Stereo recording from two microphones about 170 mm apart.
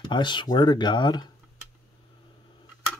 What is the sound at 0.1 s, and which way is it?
Speech, 30° left (ahead or behind).